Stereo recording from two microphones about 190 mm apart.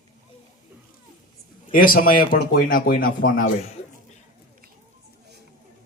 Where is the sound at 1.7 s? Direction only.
50° left (ahead or behind).